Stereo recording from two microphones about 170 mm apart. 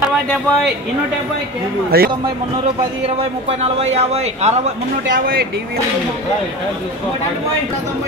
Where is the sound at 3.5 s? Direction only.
40° right (ahead or behind).